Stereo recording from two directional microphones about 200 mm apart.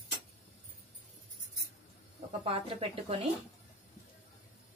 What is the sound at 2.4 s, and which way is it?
Speech, 25° right (ahead or behind).